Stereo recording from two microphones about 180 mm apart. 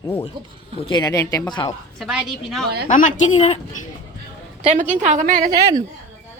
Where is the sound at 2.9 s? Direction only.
45° left (ahead or behind).